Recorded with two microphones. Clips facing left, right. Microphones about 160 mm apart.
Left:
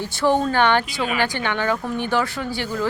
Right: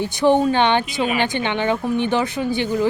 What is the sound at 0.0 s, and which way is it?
Speech, 20° right (ahead or behind).